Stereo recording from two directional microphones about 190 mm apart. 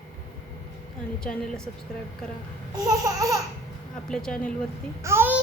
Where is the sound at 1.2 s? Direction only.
5° left (ahead or behind).